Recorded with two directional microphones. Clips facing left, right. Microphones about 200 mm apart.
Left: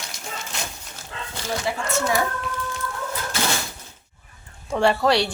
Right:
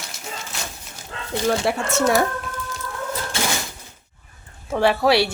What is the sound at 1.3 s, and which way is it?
Speech, 70° right (ahead or behind).